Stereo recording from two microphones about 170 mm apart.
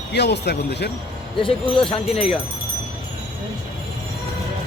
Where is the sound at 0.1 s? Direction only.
80° left.